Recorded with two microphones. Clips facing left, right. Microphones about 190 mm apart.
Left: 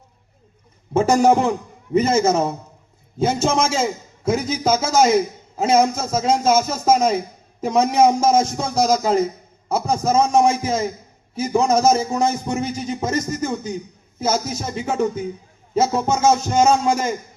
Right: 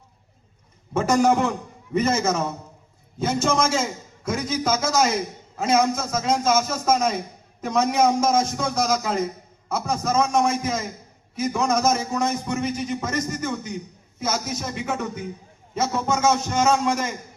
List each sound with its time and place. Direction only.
0.9 s a man's voice: 30° left (ahead or behind)